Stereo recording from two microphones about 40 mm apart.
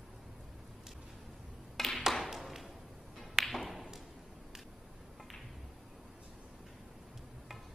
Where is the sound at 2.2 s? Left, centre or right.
Centre.